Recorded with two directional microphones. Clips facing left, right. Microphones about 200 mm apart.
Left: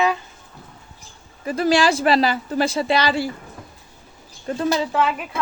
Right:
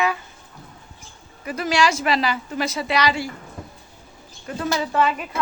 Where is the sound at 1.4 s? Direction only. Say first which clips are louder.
Left 3 dB; 30° left (ahead or behind).